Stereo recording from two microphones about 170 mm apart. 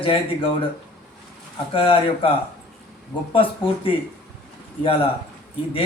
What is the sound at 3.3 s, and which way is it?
Speech, 30° left (ahead or behind).